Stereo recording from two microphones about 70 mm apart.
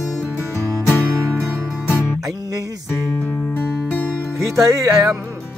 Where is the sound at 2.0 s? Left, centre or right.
Centre.